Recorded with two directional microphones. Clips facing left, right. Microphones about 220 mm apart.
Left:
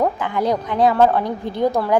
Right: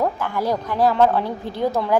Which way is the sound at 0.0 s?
15° left (ahead or behind).